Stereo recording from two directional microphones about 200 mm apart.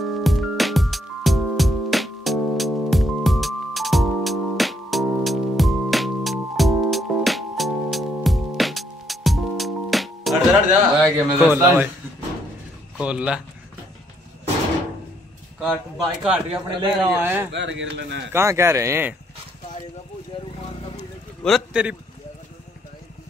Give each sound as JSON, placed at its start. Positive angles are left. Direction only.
{"t": 0.0, "sound": "music", "side_deg": 0}
{"t": 11.3, "sound": "speech", "side_deg": -5}
{"t": 12.9, "sound": "speech", "side_deg": -5}
{"t": 15.6, "sound": "speech", "side_deg": 0}
{"t": 17.5, "sound": "speech", "side_deg": -65}
{"t": 18.3, "sound": "speech", "side_deg": -15}
{"t": 20.3, "sound": "a sound", "side_deg": 25}
{"t": 21.4, "sound": "a man's voice", "side_deg": 0}